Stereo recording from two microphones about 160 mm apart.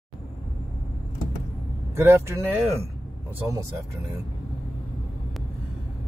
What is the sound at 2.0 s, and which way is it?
Speech, 15° right (ahead or behind).